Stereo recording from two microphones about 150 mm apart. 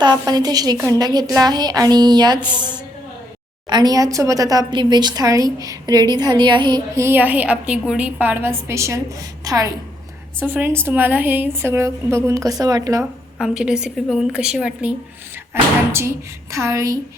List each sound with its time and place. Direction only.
0.0 s a woman's voice: 30° right (ahead or behind)
10.4 s a woman's voice: 15° right (ahead or behind)
13.4 s a woman's voice: 5° right (ahead or behind); by 17.0 s 20° right (ahead or behind)